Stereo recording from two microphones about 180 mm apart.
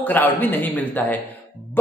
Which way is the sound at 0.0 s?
10° left (ahead or behind).